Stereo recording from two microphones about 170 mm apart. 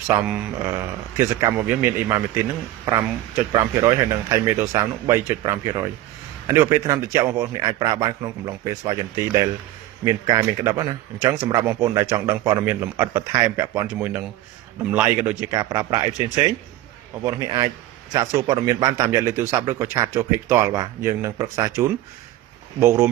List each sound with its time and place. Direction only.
0.1 s speech: 10° right (ahead or behind)
15.4 s speech: 20° right (ahead or behind)